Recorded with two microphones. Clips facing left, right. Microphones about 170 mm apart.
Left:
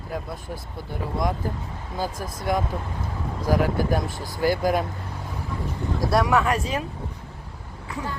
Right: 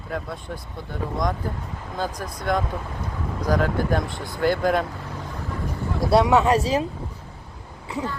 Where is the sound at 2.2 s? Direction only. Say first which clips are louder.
Right 1 dB; 5° left (ahead or behind).